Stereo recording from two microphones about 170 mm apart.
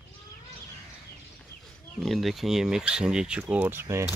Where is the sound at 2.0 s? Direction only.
Centre (ahead or behind).